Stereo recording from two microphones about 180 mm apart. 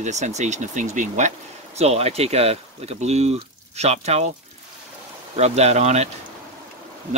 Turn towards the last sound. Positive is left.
turn(degrees=-40)  # may be behind; listen again after turning